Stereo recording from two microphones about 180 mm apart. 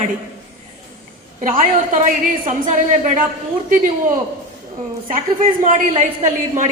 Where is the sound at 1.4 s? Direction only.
50° right (ahead or behind).